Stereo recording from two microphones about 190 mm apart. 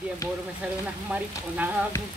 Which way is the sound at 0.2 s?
15° left (ahead or behind).